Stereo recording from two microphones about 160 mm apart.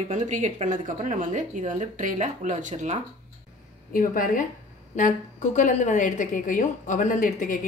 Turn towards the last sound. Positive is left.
turn(degrees=55)  # may be behind; listen again after turning